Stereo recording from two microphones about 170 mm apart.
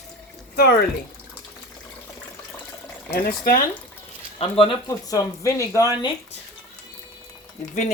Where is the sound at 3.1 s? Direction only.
60° left (ahead or behind).